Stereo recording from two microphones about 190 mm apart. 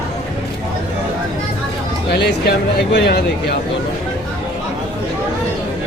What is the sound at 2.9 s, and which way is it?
Speech, 60° left (ahead or behind).